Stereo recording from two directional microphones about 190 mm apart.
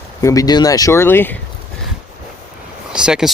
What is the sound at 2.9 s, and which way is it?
Speech, 5° right (ahead or behind).